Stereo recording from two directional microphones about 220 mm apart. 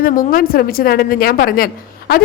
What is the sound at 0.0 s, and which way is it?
A woman's voice, 40° left (ahead or behind).